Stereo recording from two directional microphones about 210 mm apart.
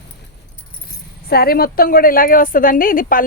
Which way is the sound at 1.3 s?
45° left (ahead or behind).